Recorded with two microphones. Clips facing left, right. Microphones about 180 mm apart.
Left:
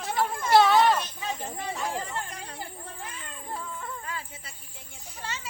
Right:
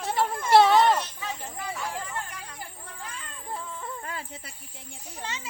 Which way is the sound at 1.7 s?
30° left (ahead or behind).